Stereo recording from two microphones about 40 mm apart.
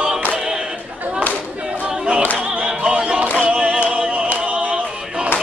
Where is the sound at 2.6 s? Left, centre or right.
Right.